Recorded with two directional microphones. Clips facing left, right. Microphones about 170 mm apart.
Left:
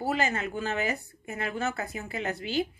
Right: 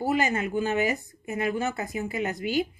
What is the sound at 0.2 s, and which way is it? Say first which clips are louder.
A woman's voice: right 4 dB; 15° right (ahead or behind).